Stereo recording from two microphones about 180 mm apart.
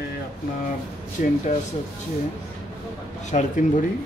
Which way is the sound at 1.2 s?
45° left (ahead or behind).